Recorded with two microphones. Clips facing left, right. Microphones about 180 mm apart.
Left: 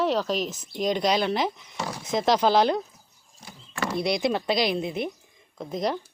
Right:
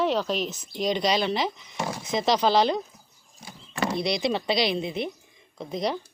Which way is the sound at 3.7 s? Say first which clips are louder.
Right 2 dB; 15° right (ahead or behind).